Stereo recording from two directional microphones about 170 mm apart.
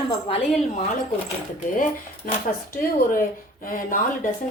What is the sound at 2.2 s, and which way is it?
Speech, 55° left (ahead or behind).